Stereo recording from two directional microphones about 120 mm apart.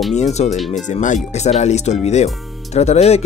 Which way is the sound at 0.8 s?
90° left.